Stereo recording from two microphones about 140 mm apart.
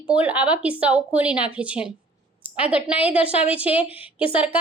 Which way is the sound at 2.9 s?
10° right (ahead or behind).